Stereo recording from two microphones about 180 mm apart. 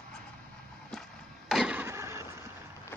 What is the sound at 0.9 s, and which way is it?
Vehicle, centre (ahead or behind).